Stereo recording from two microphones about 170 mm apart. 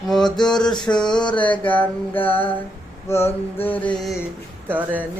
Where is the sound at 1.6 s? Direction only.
10° left (ahead or behind).